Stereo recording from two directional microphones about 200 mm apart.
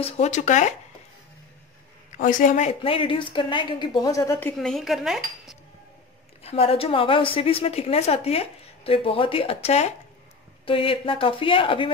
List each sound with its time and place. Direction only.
0.0 s speech: 35° left (ahead or behind)
2.1 s a woman's voice: 40° left (ahead or behind); by 5.6 s centre (ahead or behind)
6.4 s a woman's voice: 30° left (ahead or behind)